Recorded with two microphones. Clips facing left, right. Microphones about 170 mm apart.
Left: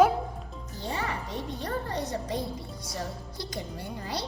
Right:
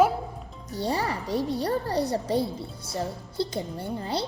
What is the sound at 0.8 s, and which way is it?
A child's voice, 35° right (ahead or behind).